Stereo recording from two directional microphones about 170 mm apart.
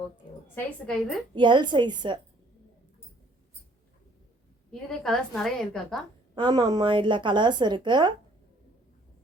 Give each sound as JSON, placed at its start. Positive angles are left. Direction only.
{"t": 0.5, "sound": "a woman's voice", "side_deg": 5}
{"t": 1.4, "sound": "a woman's voice", "side_deg": -25}
{"t": 4.7, "sound": "a woman's voice", "side_deg": 0}
{"t": 6.3, "sound": "a woman's voice", "side_deg": -25}